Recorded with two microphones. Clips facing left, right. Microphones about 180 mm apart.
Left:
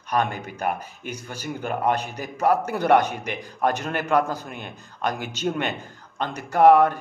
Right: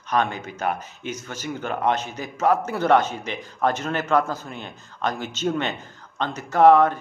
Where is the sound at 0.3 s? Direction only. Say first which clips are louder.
Even; 45° left (ahead or behind).